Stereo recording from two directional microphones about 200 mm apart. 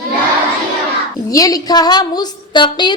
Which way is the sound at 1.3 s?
20° left (ahead or behind).